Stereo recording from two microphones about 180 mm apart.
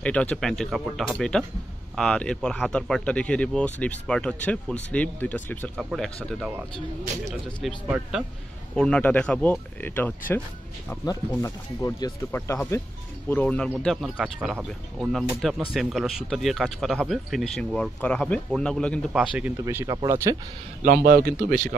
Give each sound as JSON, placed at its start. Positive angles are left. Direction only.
{"t": 0.0, "sound": "speech", "side_deg": 5}
{"t": 19.2, "sound": "speech", "side_deg": -5}
{"t": 20.8, "sound": "speech", "side_deg": -55}